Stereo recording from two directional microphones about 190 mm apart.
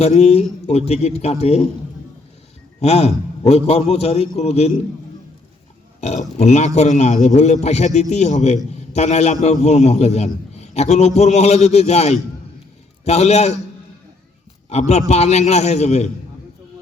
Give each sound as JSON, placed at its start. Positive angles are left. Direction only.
{"t": 0.0, "sound": "a man's voice", "side_deg": 35}
{"t": 2.8, "sound": "a man's voice", "side_deg": 35}
{"t": 6.0, "sound": "a man's voice", "side_deg": 35}
{"t": 14.7, "sound": "a man's voice", "side_deg": 35}